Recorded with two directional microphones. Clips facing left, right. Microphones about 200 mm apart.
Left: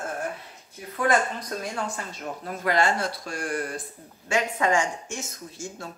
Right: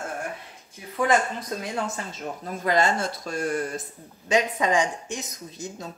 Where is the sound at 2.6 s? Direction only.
20° right (ahead or behind).